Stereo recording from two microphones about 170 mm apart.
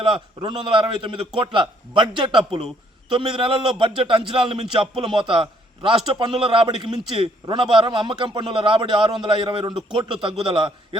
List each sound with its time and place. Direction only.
0.0 s a man's voice: 30° right (ahead or behind)